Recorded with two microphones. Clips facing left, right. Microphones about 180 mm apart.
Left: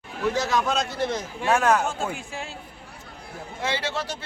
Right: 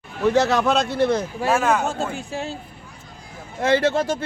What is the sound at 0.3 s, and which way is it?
Speech, 65° right (ahead or behind).